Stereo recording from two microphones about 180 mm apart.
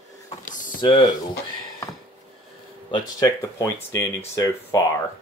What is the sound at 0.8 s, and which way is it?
Speech, 25° left (ahead or behind).